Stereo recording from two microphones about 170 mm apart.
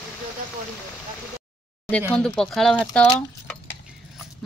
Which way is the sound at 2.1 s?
5° left (ahead or behind).